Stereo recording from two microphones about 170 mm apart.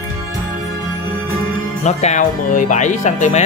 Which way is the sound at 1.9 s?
40° left (ahead or behind).